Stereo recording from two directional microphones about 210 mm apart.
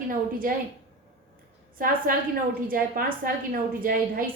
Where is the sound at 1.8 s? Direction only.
40° right (ahead or behind).